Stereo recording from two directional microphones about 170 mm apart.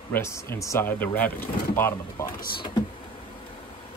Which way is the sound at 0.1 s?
15° left (ahead or behind).